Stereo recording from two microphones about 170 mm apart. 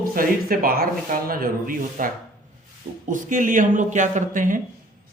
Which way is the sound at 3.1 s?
50° right (ahead or behind).